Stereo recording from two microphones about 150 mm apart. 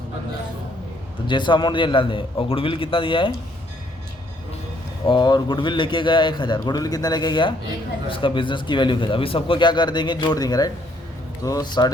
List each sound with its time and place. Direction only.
1.3 s speech: 30° left (ahead or behind)
5.0 s speech: 30° left (ahead or behind)